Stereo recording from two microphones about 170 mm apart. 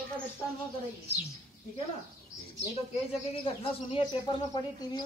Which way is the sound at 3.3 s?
30° left (ahead or behind).